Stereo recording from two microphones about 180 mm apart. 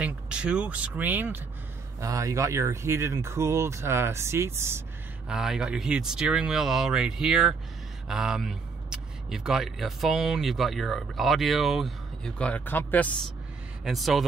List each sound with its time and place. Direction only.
0.0 s speech: 5° right (ahead or behind)
5.3 s a man's voice: 5° right (ahead or behind)
13.8 s a man's voice: centre (ahead or behind)